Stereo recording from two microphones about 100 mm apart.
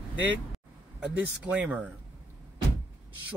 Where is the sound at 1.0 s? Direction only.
15° right (ahead or behind).